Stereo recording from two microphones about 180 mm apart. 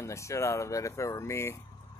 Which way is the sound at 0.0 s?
15° left (ahead or behind).